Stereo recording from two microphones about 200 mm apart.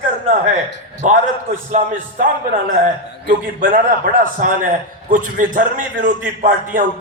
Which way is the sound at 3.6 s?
45° right (ahead or behind).